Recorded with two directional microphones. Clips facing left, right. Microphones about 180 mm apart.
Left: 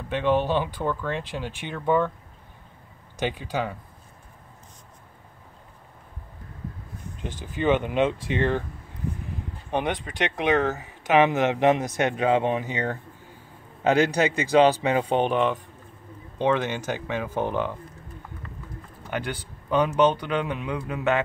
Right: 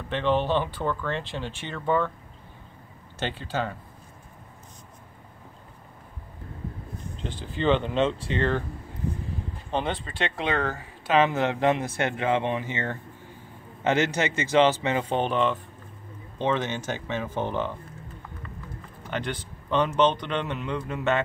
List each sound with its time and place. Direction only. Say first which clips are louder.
0.1 s speech: left 1 dB; 10° left (ahead or behind)
3.2 s speech: left 2 dB; 15° left (ahead or behind)
7.2 s speech: left 1 dB; 15° left (ahead or behind)
9.7 s speech: left 2 dB; 15° left (ahead or behind)
19.0 s a man's voice: left 1 dB; 10° left (ahead or behind)